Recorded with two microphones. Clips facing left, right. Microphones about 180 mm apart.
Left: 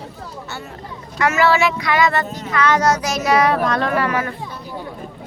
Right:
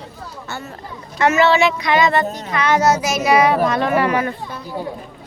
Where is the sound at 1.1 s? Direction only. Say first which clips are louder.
Right 2 dB; 25° right (ahead or behind).